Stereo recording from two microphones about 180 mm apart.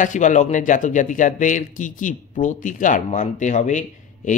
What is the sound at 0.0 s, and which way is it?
Speech, 45° left (ahead or behind).